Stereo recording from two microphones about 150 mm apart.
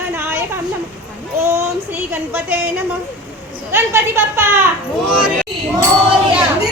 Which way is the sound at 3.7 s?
15° right (ahead or behind).